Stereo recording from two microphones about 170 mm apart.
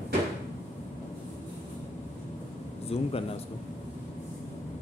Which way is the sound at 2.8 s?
35° left (ahead or behind).